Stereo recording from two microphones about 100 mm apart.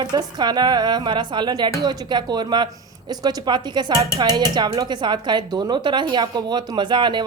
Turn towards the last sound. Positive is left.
turn(degrees=-50)  # may be behind; listen again after turning